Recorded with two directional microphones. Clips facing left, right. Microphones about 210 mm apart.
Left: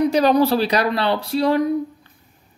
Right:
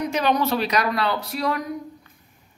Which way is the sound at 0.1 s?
35° left (ahead or behind).